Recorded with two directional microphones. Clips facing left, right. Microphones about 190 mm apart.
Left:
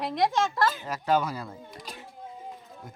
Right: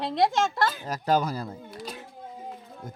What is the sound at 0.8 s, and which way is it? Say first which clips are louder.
Speech: right 1 dB; 40° right (ahead or behind).